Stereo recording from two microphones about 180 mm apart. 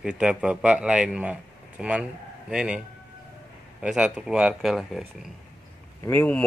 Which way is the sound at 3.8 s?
5° right (ahead or behind).